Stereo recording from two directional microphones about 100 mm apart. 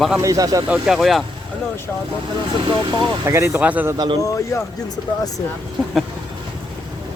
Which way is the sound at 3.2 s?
30° right (ahead or behind).